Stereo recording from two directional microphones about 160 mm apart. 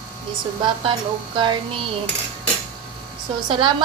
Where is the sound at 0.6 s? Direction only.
30° right (ahead or behind).